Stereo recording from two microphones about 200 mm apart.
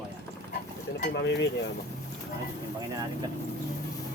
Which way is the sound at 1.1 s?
65° left (ahead or behind).